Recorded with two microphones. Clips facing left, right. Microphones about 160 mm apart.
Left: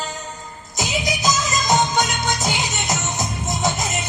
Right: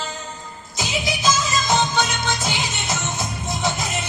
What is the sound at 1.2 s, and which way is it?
Music, 15° left (ahead or behind).